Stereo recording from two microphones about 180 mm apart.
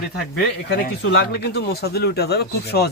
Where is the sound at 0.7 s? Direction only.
70° left (ahead or behind).